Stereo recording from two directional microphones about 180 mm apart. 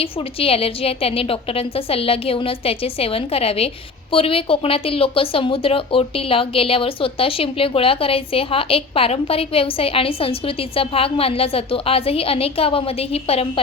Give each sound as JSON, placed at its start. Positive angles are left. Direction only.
{"t": 0.0, "sound": "speech", "side_deg": 30}